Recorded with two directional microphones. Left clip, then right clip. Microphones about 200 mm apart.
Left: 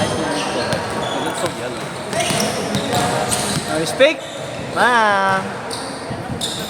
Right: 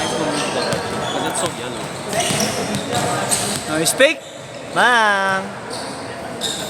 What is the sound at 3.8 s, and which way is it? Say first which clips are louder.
Basketball bounce: even; 40° right (ahead or behind).